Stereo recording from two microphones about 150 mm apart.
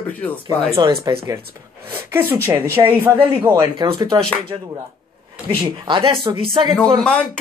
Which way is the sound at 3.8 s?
30° right (ahead or behind).